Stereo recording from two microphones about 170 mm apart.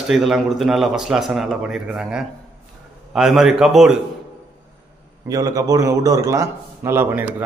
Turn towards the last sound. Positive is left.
turn(degrees=-10)  # may be behind; listen again after turning